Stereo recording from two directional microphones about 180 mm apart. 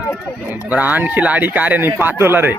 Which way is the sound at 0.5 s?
10° right (ahead or behind).